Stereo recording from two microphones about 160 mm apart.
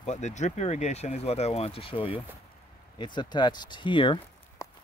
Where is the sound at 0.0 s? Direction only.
45° left (ahead or behind); by 4.2 s 30° left (ahead or behind).